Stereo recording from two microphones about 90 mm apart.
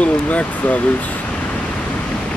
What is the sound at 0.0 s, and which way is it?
Speech, 15° left (ahead or behind).